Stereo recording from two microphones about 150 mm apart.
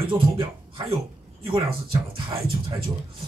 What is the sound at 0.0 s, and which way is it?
Speech, 35° right (ahead or behind).